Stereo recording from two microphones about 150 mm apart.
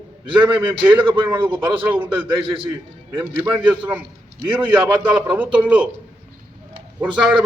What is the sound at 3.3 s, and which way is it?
A man's voice, 10° right (ahead or behind).